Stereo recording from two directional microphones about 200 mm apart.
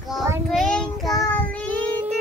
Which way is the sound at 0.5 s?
5° left (ahead or behind).